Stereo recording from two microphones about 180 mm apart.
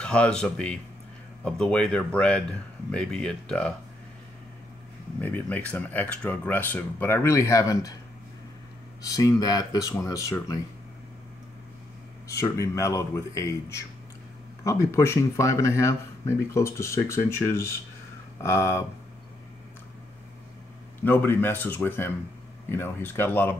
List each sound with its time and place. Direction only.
0.0 s speech: 5° left (ahead or behind)
5.2 s speech: 10° left (ahead or behind)
9.0 s speech: 20° left (ahead or behind)
12.4 s speech: 15° left (ahead or behind)
21.0 s speech: 10° left (ahead or behind)